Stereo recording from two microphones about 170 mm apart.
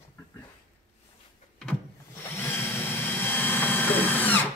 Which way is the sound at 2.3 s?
15° left (ahead or behind).